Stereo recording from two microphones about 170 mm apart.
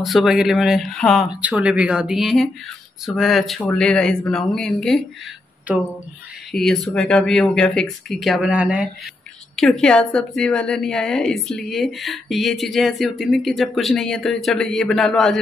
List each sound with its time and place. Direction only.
0.0 s a woman's voice: centre (ahead or behind)
6.5 s a woman's voice: centre (ahead or behind)
9.6 s a woman's voice: 5° left (ahead or behind)